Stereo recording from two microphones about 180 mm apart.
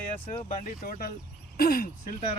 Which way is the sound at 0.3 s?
45° left (ahead or behind).